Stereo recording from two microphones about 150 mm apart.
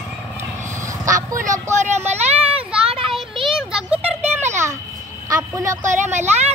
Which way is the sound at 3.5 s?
5° right (ahead or behind).